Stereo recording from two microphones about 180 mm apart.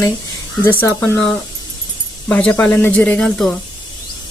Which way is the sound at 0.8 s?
10° left (ahead or behind).